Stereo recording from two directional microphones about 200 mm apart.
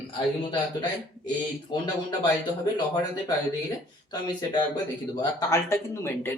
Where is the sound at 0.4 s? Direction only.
25° left (ahead or behind).